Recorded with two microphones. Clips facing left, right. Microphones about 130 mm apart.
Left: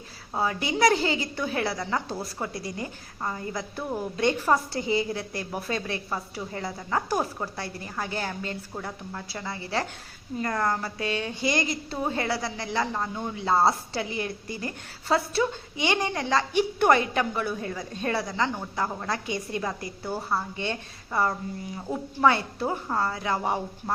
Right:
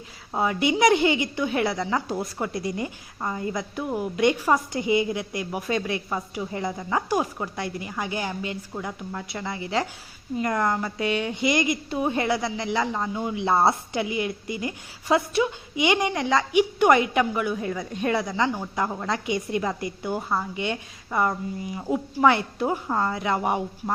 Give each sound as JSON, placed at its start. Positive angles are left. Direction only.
{"t": 0.3, "sound": "a woman's voice", "side_deg": -20}
{"t": 3.8, "sound": "a woman's voice", "side_deg": -10}